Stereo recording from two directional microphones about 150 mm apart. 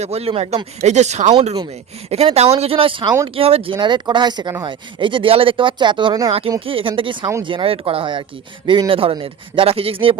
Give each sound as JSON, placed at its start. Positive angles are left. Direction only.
{"t": 0.0, "sound": "speech", "side_deg": -45}